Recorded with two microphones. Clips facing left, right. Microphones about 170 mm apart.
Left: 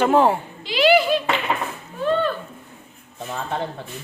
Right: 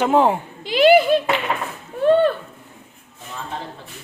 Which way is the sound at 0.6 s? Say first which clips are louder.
Right 4 dB; 50° right (ahead or behind).